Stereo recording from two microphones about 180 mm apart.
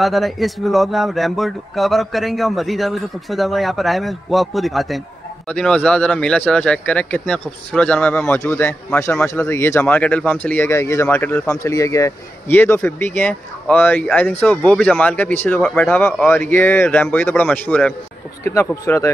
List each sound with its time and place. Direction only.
0.0 s speech: centre (ahead or behind)